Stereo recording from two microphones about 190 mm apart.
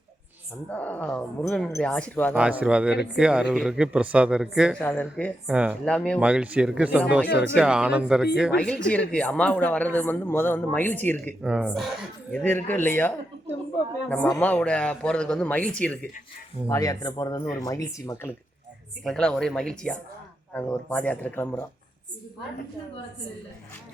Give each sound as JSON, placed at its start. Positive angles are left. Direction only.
{"t": 0.7, "sound": "speech", "side_deg": 10}
{"t": 2.3, "sound": "speech", "side_deg": -5}
{"t": 4.8, "sound": "speech", "side_deg": 5}
{"t": 5.5, "sound": "speech", "side_deg": -5}
{"t": 6.1, "sound": "speech", "side_deg": -5}
{"t": 11.4, "sound": "speech", "side_deg": -5}
{"t": 16.6, "sound": "speech", "side_deg": 15}
{"t": 19.0, "sound": "speech", "side_deg": 5}